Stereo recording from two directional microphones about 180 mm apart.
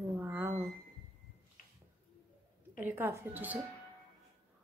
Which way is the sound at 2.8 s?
10° right (ahead or behind).